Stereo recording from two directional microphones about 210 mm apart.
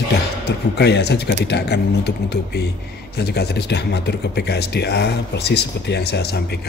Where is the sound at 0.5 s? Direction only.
50° left (ahead or behind).